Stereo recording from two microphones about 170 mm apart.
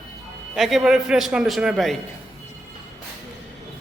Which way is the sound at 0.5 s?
Centre (ahead or behind).